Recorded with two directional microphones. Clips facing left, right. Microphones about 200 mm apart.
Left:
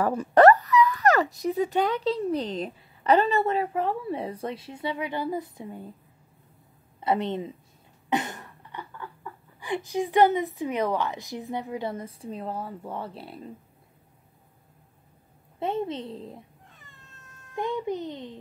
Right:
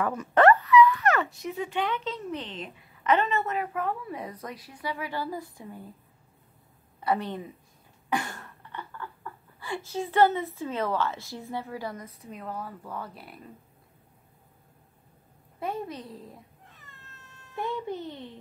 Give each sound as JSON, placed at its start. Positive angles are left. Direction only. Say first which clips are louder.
{"t": 0.0, "sound": "speech", "louder": "left 4 dB", "side_deg": 35}
{"t": 7.0, "sound": "a woman's voice", "louder": "left 3 dB", "side_deg": 25}
{"t": 15.6, "sound": "a child's voice", "louder": "left 5 dB", "side_deg": 25}
{"t": 16.7, "sound": "cat", "louder": "even", "side_deg": 0}
{"t": 17.6, "sound": "a child's voice", "louder": "left 3 dB", "side_deg": 15}